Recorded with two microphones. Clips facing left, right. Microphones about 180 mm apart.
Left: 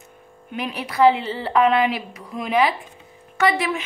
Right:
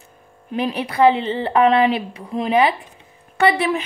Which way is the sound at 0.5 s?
30° right (ahead or behind).